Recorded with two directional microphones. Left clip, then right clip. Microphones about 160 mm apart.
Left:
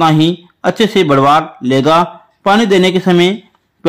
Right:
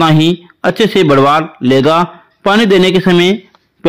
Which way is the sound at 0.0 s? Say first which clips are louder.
Right 1 dB; 15° right (ahead or behind).